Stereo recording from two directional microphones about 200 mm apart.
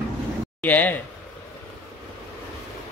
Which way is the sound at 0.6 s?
10° left (ahead or behind).